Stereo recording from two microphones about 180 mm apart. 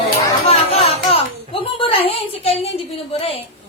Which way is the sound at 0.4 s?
35° left (ahead or behind).